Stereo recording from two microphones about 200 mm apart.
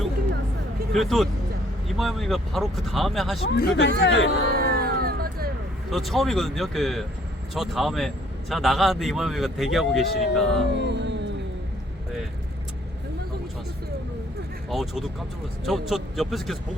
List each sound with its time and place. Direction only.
0.9 s a man's voice: centre (ahead or behind)
3.5 s speech: 60° left (ahead or behind)
4.5 s music: 50° right (ahead or behind)
5.9 s a man's voice: centre (ahead or behind)
10.8 s music: 60° right (ahead or behind)
14.7 s a man's voice: centre (ahead or behind)